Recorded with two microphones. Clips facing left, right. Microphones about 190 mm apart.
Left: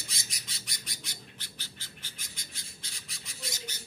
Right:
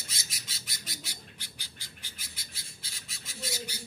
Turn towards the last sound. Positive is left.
turn(degrees=-5)  # may be behind; listen again after turning